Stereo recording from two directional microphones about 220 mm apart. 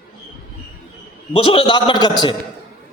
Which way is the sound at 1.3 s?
25° left (ahead or behind).